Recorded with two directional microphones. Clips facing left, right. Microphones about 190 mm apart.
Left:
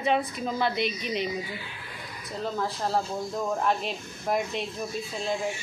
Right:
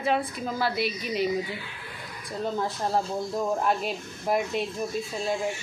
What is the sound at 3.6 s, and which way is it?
A woman's voice, 5° right (ahead or behind).